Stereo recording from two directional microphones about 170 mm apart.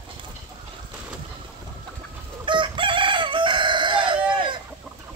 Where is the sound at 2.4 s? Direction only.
30° right (ahead or behind).